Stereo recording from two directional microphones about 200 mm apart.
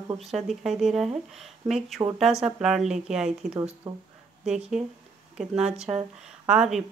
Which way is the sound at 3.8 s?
25° right (ahead or behind).